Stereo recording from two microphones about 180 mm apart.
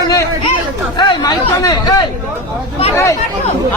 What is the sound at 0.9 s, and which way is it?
Speech, 20° left (ahead or behind).